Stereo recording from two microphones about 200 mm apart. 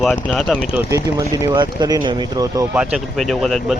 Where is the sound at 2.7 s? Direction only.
5° right (ahead or behind).